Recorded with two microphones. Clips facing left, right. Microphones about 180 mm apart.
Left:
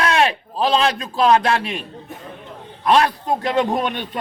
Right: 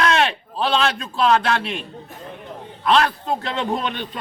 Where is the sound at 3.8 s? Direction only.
45° left (ahead or behind).